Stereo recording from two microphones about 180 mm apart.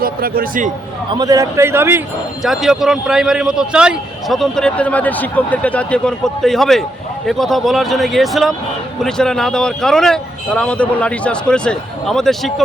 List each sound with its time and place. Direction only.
0.0 s speech: 55° right (ahead or behind)
1.2 s a man's voice: 20° right (ahead or behind)
2.4 s a man's voice: centre (ahead or behind)